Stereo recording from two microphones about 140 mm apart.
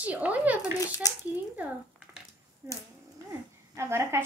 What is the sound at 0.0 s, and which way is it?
Speech, 10° right (ahead or behind).